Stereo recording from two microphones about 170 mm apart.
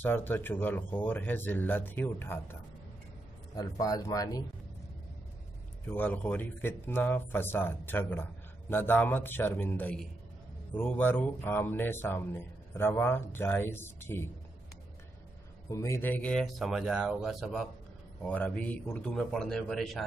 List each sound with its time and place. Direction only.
0.0 s speech: 10° left (ahead or behind)
3.5 s speech: 20° left (ahead or behind)
5.9 s speech: 10° left (ahead or behind)
15.7 s speech: 15° left (ahead or behind); by 20.1 s centre (ahead or behind)